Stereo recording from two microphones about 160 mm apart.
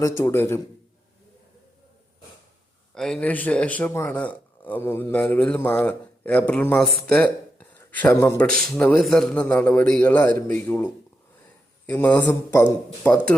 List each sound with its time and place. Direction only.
0.0 s speech: 15° left (ahead or behind)
2.9 s speech: 5° left (ahead or behind)